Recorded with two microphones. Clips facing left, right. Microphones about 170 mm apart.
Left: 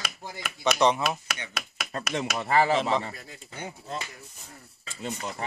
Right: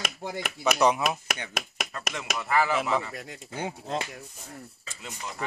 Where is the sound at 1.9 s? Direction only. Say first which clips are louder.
Left 5 dB; 30° left (ahead or behind).